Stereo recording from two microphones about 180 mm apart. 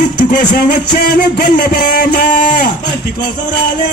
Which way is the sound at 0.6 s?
60° left (ahead or behind).